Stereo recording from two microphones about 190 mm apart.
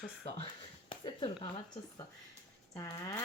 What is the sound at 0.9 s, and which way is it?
Speech, 25° left (ahead or behind).